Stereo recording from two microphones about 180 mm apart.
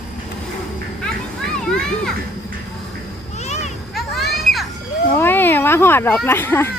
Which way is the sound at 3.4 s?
40° left (ahead or behind).